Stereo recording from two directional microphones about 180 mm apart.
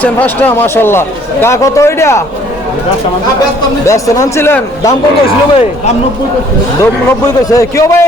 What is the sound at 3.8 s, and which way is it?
Speech, 15° left (ahead or behind).